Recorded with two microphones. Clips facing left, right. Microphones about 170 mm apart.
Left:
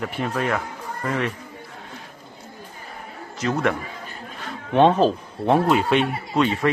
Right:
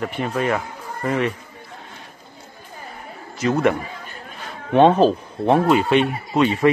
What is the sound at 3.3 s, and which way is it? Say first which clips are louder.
Speech: right 4 dB; 5° right (ahead or behind).